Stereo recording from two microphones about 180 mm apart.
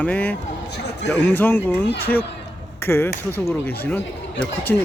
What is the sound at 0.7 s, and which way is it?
Speech, 70° left (ahead or behind).